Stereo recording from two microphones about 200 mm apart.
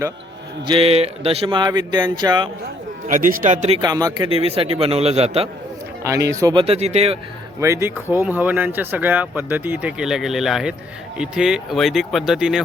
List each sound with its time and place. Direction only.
0.7 s speech: 30° right (ahead or behind)
3.1 s speech: 40° right (ahead or behind)
3.8 s speech: 15° right (ahead or behind)
4.3 s speech: 30° right (ahead or behind)
6.0 s speech: 15° right (ahead or behind); by 7.2 s 30° right (ahead or behind)
7.6 s speech: 15° right (ahead or behind)